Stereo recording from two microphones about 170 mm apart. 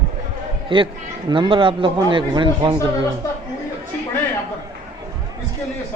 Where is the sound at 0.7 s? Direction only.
30° right (ahead or behind).